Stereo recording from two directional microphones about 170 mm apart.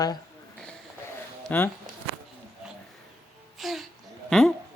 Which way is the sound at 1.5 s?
10° left (ahead or behind).